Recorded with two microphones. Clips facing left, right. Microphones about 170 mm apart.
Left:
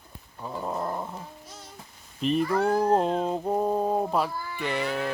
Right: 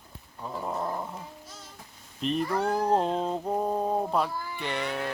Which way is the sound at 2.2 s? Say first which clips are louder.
Left 3 dB; 5° left (ahead or behind).